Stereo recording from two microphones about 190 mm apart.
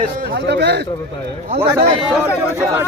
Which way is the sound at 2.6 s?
10° right (ahead or behind).